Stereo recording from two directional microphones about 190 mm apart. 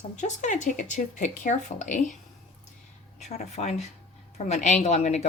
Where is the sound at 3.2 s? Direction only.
35° left (ahead or behind).